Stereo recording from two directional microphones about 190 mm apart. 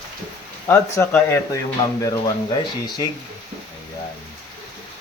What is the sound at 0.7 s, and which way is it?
Speech, 10° left (ahead or behind).